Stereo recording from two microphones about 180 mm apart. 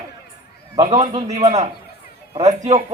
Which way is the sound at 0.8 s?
40° right (ahead or behind).